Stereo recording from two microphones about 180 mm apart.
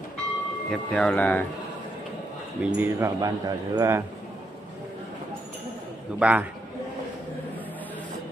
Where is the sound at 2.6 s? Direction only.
10° right (ahead or behind).